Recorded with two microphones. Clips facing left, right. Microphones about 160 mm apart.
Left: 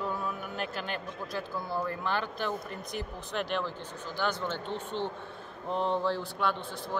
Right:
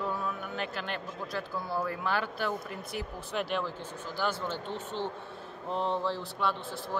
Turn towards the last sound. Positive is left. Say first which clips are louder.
# left 1 dB
turn(degrees=0)  # may be behind; listen again after turning